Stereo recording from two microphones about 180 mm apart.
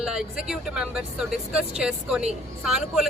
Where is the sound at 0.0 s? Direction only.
5° right (ahead or behind).